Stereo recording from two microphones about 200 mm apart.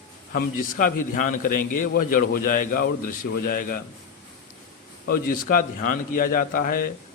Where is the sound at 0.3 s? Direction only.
45° left (ahead or behind).